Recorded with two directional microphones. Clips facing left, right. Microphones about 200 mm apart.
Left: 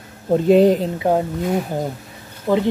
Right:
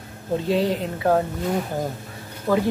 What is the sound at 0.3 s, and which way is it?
Speech, 50° left (ahead or behind).